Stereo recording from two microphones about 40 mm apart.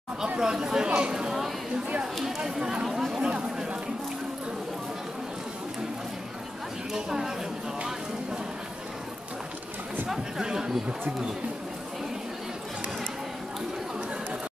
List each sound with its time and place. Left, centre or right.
0.4 s speech: centre
0.8 s speech: right
2.1 s speech: centre
3.3 s speech: right
6.9 s speech: centre
10.0 s speech: centre